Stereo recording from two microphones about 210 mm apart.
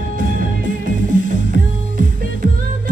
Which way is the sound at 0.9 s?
60° left (ahead or behind).